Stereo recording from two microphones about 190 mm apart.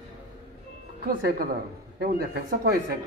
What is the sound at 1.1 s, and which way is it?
A woman's voice, 50° right (ahead or behind).